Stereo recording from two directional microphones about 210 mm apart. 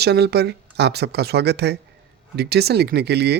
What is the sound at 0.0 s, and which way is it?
Speech, 50° right (ahead or behind).